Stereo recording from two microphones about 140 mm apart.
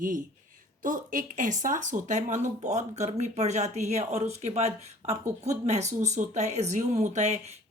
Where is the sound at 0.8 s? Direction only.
70° right (ahead or behind).